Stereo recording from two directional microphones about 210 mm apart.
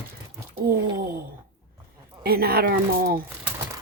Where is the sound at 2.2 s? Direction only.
45° right (ahead or behind).